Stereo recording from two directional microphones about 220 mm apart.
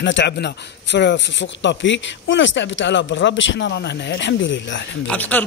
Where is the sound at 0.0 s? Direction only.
55° left (ahead or behind).